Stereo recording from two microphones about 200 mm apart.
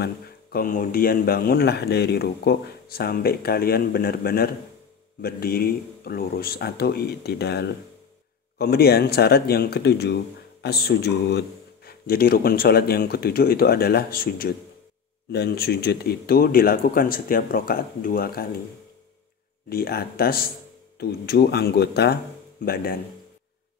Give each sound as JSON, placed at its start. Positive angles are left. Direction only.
{"t": 0.0, "sound": "speech", "side_deg": 50}
{"t": 19.7, "sound": "speech", "side_deg": 50}